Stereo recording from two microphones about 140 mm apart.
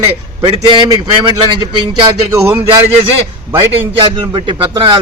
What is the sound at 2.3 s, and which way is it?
Speech, 20° right (ahead or behind).